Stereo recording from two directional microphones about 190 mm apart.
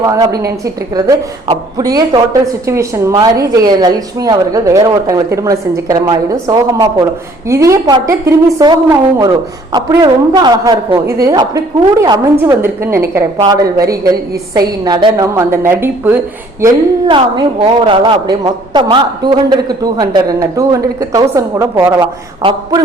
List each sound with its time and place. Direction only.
0.0 s a woman's voice: 15° right (ahead or behind)
17.1 s a woman's voice: 25° right (ahead or behind)